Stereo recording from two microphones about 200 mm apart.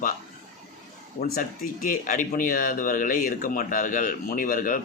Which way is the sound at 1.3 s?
40° left (ahead or behind).